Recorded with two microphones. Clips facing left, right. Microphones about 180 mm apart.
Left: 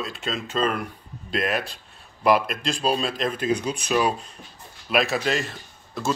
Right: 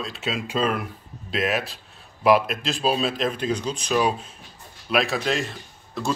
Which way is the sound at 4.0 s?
Centre (ahead or behind).